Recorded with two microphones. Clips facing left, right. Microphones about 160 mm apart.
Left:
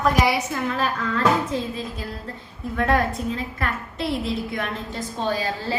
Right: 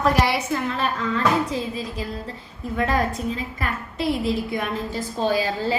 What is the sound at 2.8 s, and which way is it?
A woman's voice, centre (ahead or behind).